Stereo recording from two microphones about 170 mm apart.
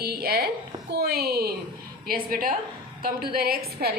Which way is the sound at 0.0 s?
65° right (ahead or behind).